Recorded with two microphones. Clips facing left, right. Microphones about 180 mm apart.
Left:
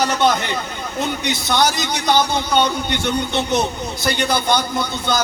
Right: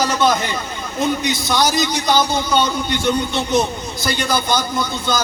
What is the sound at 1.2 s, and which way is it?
A man's voice, 60° left (ahead or behind).